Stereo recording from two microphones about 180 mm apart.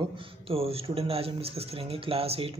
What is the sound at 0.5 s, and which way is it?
Speech, 35° right (ahead or behind).